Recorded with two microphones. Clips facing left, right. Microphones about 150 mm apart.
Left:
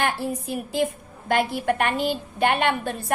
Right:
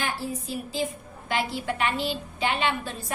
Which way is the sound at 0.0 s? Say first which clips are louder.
Left 5 dB; 60° left (ahead or behind).